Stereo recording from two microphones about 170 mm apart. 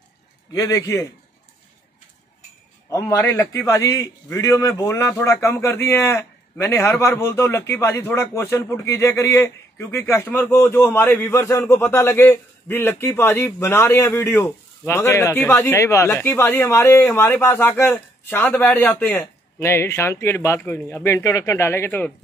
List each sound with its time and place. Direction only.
0.5 s a man's voice: 20° left (ahead or behind)
2.9 s a man's voice: 20° left (ahead or behind)